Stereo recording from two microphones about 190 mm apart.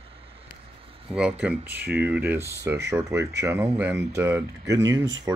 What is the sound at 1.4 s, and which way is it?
Speech, 5° right (ahead or behind).